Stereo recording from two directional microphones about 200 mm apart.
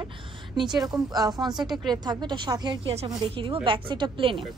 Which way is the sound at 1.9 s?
20° right (ahead or behind).